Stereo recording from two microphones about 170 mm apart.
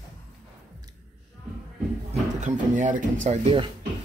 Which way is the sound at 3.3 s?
45° right (ahead or behind).